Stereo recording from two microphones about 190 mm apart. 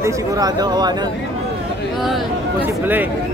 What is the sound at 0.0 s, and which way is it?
Speech, 20° right (ahead or behind).